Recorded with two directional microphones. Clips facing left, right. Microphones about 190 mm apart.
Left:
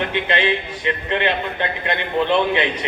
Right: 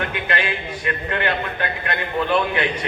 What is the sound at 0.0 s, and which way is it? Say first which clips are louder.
A man's voice: left 4 dB; 25° left (ahead or behind).